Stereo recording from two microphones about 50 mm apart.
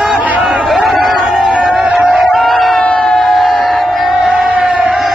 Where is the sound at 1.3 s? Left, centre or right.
Centre.